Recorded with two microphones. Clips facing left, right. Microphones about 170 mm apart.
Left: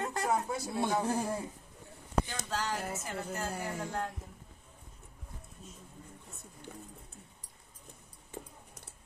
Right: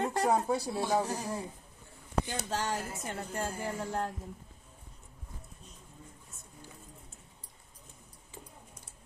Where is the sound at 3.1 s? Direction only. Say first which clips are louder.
Right 4 dB; 30° right (ahead or behind).